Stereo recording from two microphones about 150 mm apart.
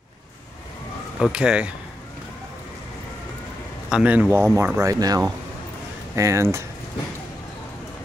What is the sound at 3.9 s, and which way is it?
Speech, 10° right (ahead or behind).